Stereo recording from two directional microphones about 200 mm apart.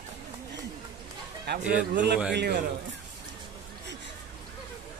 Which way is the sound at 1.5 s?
55° right (ahead or behind).